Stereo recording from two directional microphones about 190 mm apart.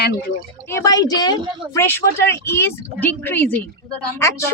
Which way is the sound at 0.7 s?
15° left (ahead or behind).